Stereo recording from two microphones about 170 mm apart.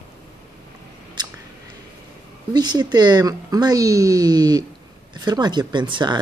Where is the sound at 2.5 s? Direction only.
25° right (ahead or behind).